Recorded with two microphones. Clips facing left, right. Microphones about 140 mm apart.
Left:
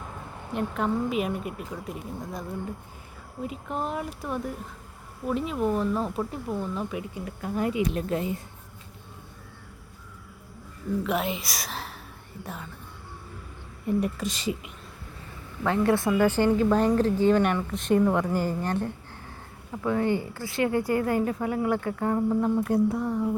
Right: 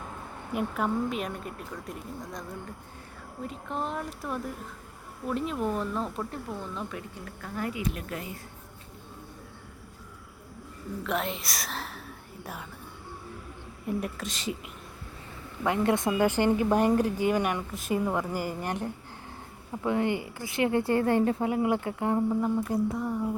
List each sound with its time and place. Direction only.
0.5 s speech: centre (ahead or behind)
3.4 s speech: 5° left (ahead or behind); by 8.4 s 25° left (ahead or behind)
11.0 s speech: 5° left (ahead or behind)
13.8 s speech: centre (ahead or behind)
15.6 s speech: 20° right (ahead or behind)
22.3 s speech: centre (ahead or behind)